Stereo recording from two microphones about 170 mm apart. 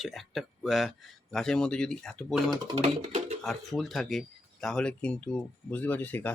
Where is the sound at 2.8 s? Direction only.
40° right (ahead or behind).